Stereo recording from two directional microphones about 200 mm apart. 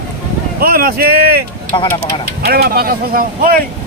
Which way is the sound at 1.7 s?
20° left (ahead or behind).